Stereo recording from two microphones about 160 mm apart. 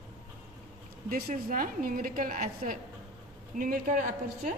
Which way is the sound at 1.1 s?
60° right (ahead or behind).